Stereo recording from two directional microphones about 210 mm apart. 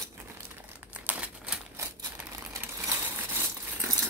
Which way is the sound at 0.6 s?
10° right (ahead or behind).